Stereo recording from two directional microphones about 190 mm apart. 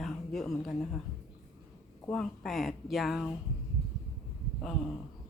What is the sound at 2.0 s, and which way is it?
Speech, 5° left (ahead or behind).